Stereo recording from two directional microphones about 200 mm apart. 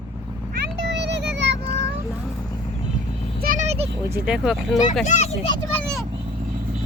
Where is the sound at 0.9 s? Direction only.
60° right (ahead or behind).